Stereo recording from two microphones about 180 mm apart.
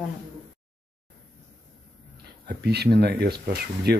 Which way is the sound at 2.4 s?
65° right (ahead or behind).